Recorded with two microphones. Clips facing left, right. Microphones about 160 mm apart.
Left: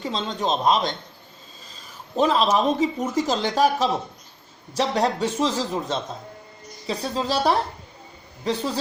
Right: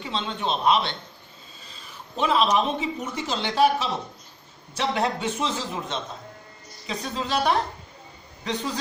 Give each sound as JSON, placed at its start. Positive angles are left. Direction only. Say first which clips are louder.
{"t": 0.0, "sound": "speech", "louder": "left 3 dB", "side_deg": 40}
{"t": 2.1, "sound": "speech", "louder": "left 2 dB", "side_deg": 40}